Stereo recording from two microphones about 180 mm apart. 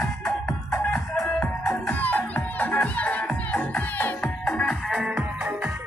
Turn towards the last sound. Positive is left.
turn(degrees=0)  # may be behind; listen again after turning